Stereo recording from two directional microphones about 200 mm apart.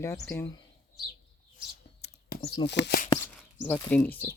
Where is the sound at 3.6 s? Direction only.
10° left (ahead or behind).